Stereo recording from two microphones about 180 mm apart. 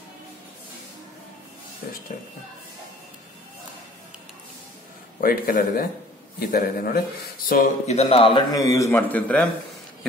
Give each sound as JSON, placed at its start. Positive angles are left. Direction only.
{"t": 5.2, "sound": "speech", "side_deg": 55}
{"t": 7.8, "sound": "a man's voice", "side_deg": 35}